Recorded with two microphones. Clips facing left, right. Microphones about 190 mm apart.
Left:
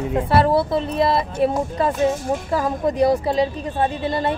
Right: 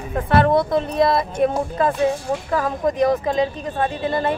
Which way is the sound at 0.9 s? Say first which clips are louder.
Right 1 dB; 30° left (ahead or behind).